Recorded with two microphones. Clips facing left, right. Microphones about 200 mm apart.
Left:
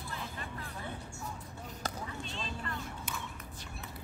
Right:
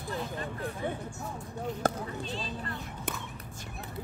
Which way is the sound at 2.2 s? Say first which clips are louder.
Right 4 dB; 35° right (ahead or behind).